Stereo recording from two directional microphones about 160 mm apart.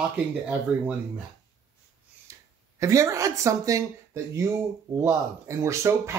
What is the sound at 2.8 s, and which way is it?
Speech, 20° right (ahead or behind).